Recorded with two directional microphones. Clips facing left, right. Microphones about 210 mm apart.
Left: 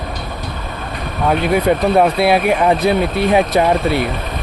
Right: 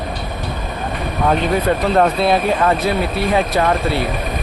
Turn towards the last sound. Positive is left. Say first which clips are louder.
# left 3 dB
turn(degrees=20)  # may be behind; listen again after turning